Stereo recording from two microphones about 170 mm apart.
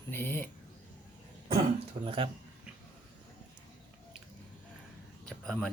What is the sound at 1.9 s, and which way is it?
Speech, 30° right (ahead or behind).